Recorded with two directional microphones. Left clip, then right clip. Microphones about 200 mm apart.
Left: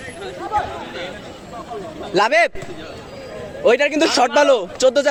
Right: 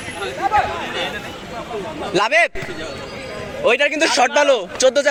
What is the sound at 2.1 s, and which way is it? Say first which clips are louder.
Speech: left 1 dB; 15° left (ahead or behind).